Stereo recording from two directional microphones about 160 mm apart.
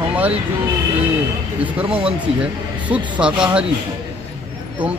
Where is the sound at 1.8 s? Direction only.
35° right (ahead or behind).